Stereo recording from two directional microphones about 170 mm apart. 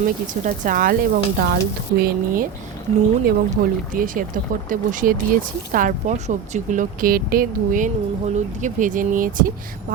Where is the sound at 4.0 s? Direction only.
50° right (ahead or behind).